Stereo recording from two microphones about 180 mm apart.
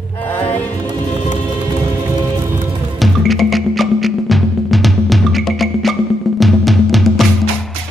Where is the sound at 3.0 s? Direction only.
Centre (ahead or behind).